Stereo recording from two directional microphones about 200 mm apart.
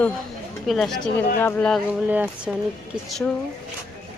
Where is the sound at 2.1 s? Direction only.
5° right (ahead or behind).